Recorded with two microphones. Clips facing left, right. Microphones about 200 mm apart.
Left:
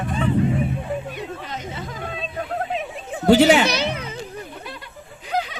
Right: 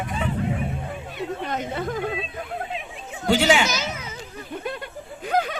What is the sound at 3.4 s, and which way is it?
Speech, 60° left (ahead or behind).